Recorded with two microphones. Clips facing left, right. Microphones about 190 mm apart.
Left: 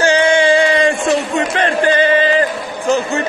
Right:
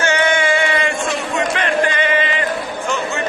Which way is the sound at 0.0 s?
30° left (ahead or behind).